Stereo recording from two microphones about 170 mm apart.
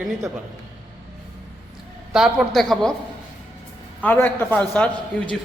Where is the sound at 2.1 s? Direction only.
5° right (ahead or behind).